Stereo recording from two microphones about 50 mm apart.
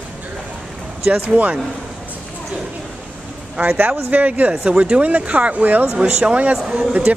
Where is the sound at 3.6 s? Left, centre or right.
Right.